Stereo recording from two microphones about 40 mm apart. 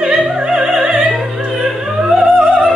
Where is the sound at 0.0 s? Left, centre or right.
Centre.